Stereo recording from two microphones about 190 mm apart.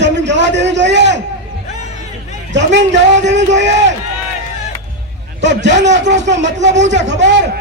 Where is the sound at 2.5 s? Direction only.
70° right (ahead or behind).